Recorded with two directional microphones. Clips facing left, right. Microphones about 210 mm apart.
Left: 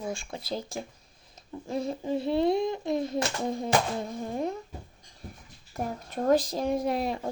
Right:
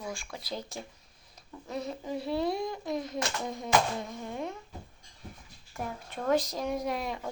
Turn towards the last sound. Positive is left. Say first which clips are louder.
# left 5 dB
turn(degrees=35)  # may be behind; listen again after turning